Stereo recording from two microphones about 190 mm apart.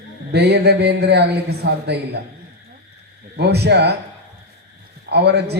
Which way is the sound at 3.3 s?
60° right (ahead or behind).